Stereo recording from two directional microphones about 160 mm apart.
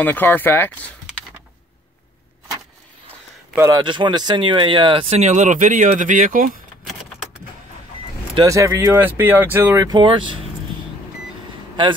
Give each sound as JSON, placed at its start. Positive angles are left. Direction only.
{"t": 0.0, "sound": "speech", "side_deg": 10}
{"t": 3.7, "sound": "speech", "side_deg": -30}
{"t": 5.2, "sound": "speech", "side_deg": -50}
{"t": 6.9, "sound": "keys jangling", "side_deg": 0}
{"t": 8.4, "sound": "speech", "side_deg": -20}
{"t": 9.9, "sound": "speech", "side_deg": -30}